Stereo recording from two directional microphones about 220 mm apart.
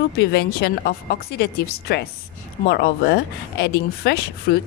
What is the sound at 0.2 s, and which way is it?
Speech, 45° left (ahead or behind).